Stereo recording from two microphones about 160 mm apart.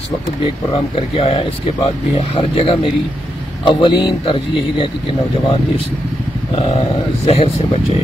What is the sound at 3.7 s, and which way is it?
Speech, 30° left (ahead or behind).